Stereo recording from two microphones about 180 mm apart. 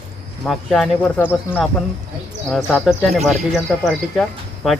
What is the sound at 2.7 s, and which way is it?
Speech, centre (ahead or behind).